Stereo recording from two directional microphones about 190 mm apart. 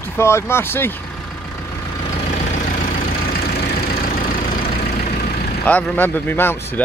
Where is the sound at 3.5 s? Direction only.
50° left (ahead or behind).